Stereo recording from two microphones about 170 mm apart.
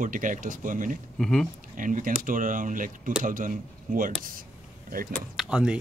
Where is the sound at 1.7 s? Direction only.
50° right (ahead or behind).